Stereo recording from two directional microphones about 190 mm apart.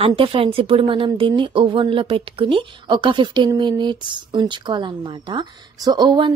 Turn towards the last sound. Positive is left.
turn(degrees=-25)  # may be behind; listen again after turning